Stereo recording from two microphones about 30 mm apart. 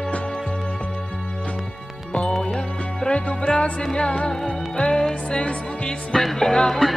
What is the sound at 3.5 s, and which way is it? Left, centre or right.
Music, left.